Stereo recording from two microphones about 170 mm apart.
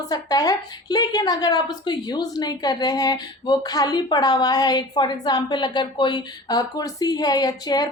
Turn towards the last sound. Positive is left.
turn(degrees=25)  # may be behind; listen again after turning